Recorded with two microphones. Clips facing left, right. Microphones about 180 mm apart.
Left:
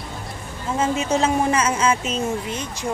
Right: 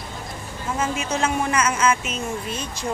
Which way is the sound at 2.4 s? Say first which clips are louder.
Left 1 dB; 15° left (ahead or behind).